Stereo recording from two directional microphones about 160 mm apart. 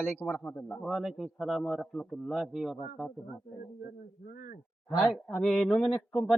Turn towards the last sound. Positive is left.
turn(degrees=0)  # may be behind; listen again after turning